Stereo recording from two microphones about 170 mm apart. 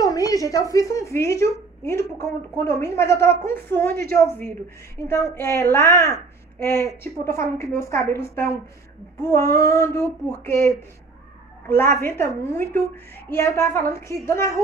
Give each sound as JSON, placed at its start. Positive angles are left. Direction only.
{"t": 0.0, "sound": "a woman's voice", "side_deg": 20}